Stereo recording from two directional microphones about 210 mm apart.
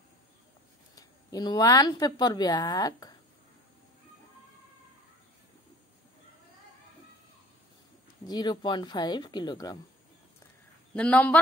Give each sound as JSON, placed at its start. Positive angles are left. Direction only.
{"t": 0.9, "sound": "speech", "side_deg": 20}
{"t": 8.3, "sound": "speech", "side_deg": 20}
{"t": 11.0, "sound": "speech", "side_deg": 5}